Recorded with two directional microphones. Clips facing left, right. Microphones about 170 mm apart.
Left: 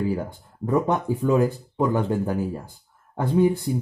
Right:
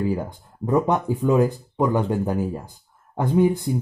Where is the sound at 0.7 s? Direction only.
15° right (ahead or behind).